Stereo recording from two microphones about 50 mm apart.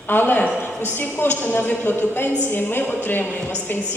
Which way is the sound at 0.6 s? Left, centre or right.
Left.